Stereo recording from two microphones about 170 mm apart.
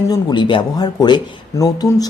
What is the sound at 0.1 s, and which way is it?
Speech, 25° left (ahead or behind).